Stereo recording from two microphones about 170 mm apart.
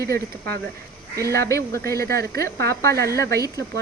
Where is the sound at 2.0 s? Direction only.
70° right (ahead or behind).